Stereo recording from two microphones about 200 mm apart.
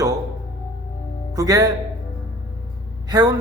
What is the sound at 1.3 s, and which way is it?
Speech, 15° right (ahead or behind).